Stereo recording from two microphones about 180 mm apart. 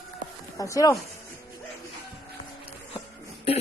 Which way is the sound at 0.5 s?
20° left (ahead or behind).